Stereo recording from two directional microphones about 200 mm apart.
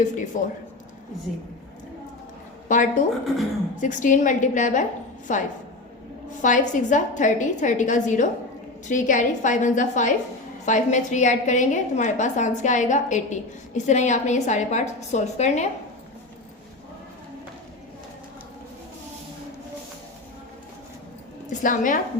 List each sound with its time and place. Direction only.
0.0 s a woman's voice: 40° left (ahead or behind)
2.6 s a woman's voice: 40° left (ahead or behind)
21.6 s a woman's voice: 40° left (ahead or behind)